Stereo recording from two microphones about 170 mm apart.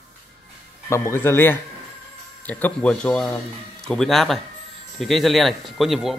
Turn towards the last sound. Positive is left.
turn(degrees=0)  # may be behind; listen again after turning